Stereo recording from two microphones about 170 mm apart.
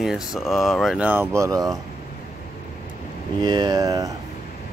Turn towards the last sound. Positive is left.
turn(degrees=-25)  # may be behind; listen again after turning